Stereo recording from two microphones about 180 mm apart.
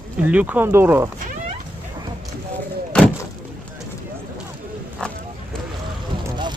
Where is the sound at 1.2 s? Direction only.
50° right (ahead or behind).